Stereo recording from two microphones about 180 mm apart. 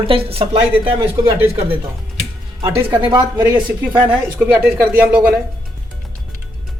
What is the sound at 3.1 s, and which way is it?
Speech, 25° right (ahead or behind).